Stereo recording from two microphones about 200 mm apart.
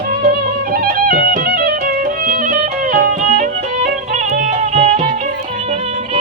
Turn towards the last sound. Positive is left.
turn(degrees=-35)  # may be behind; listen again after turning